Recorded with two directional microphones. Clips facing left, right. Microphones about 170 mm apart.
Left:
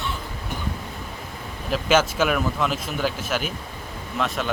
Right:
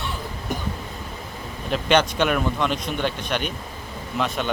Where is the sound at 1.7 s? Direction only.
5° left (ahead or behind).